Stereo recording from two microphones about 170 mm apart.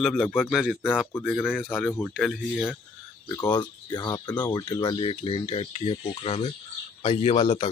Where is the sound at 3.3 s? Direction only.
25° left (ahead or behind).